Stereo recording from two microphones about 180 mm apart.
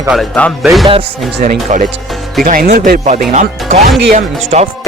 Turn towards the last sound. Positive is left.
turn(degrees=-40)  # may be behind; listen again after turning